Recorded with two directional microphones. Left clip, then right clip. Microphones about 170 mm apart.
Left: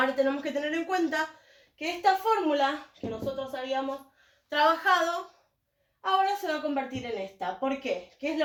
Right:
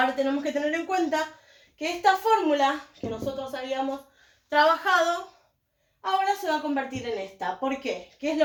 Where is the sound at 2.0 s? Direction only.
5° left (ahead or behind).